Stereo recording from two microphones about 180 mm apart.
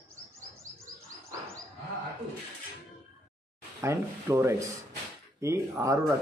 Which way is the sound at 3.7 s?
15° right (ahead or behind).